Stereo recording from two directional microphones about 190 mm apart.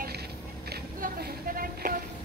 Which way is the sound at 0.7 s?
55° right (ahead or behind).